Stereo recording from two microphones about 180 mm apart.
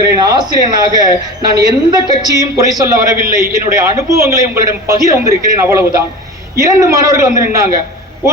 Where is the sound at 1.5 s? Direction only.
20° right (ahead or behind).